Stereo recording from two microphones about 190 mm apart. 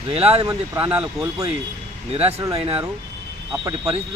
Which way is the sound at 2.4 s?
20° right (ahead or behind).